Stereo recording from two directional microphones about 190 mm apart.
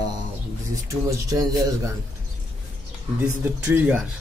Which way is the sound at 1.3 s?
20° right (ahead or behind).